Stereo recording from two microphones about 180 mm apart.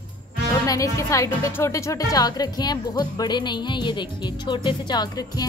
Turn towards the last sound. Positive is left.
turn(degrees=20)  # may be behind; listen again after turning